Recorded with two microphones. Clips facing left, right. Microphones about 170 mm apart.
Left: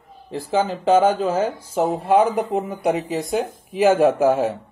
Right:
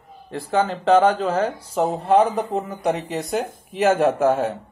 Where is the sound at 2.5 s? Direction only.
15° left (ahead or behind).